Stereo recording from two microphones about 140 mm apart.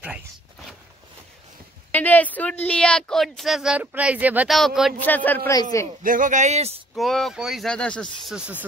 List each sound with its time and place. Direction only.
1.9 s speech: 10° left (ahead or behind); by 4.5 s 10° right (ahead or behind)
4.5 s speech: centre (ahead or behind)
5.0 s a man's voice: 15° left (ahead or behind)
5.5 s a man's voice: 25° left (ahead or behind)
6.0 s speech: 70° right (ahead or behind)
7.0 s speech: centre (ahead or behind)
8.3 s speech: 10° right (ahead or behind)